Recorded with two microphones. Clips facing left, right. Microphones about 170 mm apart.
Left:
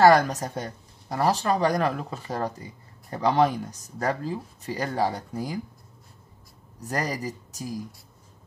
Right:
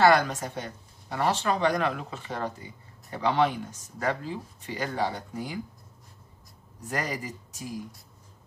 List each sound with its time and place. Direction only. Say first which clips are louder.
0.0 s speech: left 4 dB; 40° left (ahead or behind)
6.9 s speech: left 3 dB; 40° left (ahead or behind)